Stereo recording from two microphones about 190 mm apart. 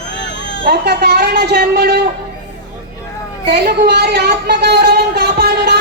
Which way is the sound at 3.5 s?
60° right (ahead or behind).